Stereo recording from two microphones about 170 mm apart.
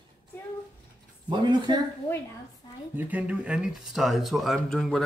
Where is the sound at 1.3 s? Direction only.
25° right (ahead or behind).